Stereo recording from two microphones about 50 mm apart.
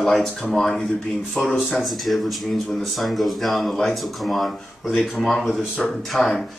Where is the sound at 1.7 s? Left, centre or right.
Centre.